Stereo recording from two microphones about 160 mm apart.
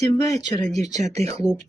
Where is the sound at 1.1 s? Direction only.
40° right (ahead or behind).